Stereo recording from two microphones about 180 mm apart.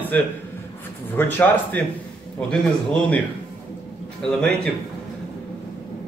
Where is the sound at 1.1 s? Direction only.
10° left (ahead or behind).